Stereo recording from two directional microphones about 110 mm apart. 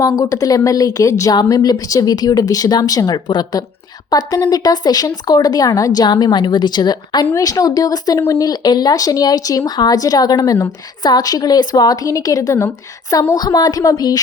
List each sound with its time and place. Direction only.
0.0 s speech: 30° left (ahead or behind)